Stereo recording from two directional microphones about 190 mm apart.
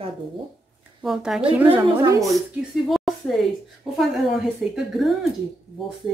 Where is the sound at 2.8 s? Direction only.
Centre (ahead or behind).